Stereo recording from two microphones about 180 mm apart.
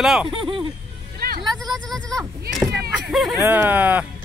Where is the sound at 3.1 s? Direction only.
Centre (ahead or behind).